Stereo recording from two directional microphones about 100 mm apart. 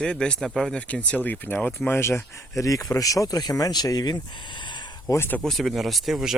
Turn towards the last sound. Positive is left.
turn(degrees=-5)  # may be behind; listen again after turning